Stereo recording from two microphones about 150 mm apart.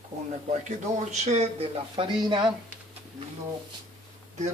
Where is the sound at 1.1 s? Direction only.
45° right (ahead or behind).